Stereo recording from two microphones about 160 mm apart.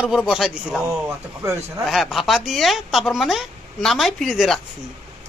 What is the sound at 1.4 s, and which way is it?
Speech, 20° right (ahead or behind).